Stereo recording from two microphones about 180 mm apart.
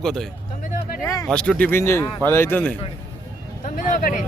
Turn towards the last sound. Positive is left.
turn(degrees=45)  # may be behind; listen again after turning